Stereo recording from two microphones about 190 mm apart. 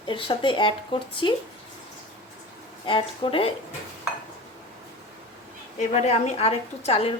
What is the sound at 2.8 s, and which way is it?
Speech, 25° left (ahead or behind).